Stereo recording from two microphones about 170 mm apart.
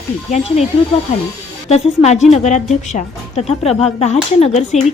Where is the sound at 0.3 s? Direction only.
40° left (ahead or behind).